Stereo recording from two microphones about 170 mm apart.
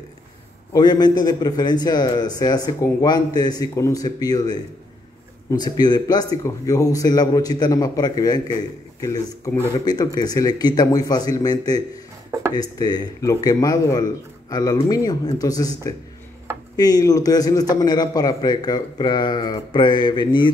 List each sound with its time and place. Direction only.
0.7 s a man's voice: 25° left (ahead or behind)